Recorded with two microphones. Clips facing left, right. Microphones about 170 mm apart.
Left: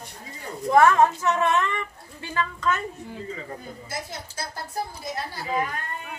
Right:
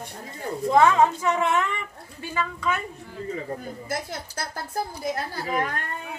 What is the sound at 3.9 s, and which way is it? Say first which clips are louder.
Speech: right 4 dB; 50° right (ahead or behind).